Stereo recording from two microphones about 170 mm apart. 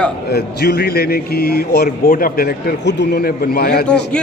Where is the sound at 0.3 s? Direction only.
70° left (ahead or behind).